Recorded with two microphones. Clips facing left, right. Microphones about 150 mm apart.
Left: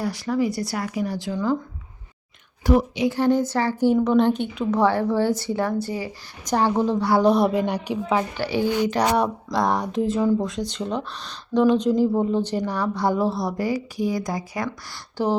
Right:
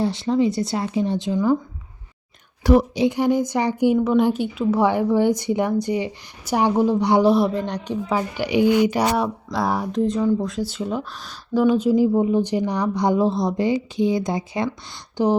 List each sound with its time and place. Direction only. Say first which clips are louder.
0.0 s speech: right 4 dB; 25° right (ahead or behind)
2.6 s a woman's voice: right 3 dB; 75° right (ahead or behind)
3.1 s speech: even; 15° right (ahead or behind)
3.9 s speech: even; 5° right (ahead or behind)
7.2 s speech: even; 5° right (ahead or behind)
7.5 s speech: left 2 dB; 10° left (ahead or behind)
8.4 s speech: right 5 dB; 15° right (ahead or behind)